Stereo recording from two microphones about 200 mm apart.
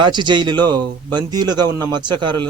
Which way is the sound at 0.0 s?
20° right (ahead or behind).